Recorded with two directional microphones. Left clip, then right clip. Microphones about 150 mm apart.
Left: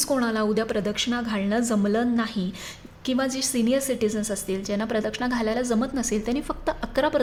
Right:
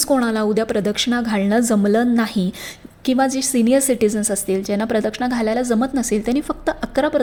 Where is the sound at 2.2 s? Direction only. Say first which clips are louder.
Right 7 dB; 45° right (ahead or behind).